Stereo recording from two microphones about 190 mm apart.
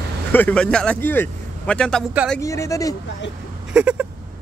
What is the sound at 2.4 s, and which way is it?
Speech, 15° left (ahead or behind).